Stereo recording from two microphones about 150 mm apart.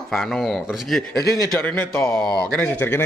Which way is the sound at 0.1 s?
Centre (ahead or behind).